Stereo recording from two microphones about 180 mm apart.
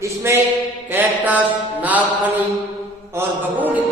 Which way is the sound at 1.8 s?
10° right (ahead or behind).